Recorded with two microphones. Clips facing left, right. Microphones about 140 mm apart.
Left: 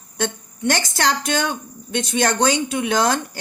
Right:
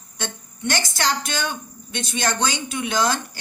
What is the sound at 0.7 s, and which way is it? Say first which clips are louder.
A woman's voice: left 4 dB; 60° left (ahead or behind).